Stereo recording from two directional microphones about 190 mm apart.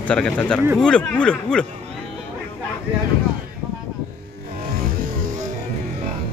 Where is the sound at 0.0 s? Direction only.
5° left (ahead or behind).